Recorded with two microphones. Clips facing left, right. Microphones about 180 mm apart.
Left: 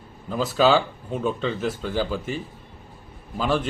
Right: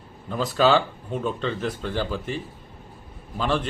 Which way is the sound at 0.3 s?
5° left (ahead or behind).